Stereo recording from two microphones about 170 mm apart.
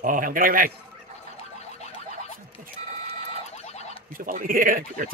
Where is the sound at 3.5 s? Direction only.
40° left (ahead or behind).